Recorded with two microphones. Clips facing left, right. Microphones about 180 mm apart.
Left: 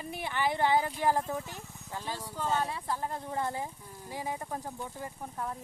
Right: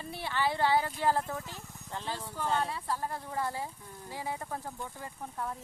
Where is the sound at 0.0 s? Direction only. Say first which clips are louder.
Even; 15° left (ahead or behind).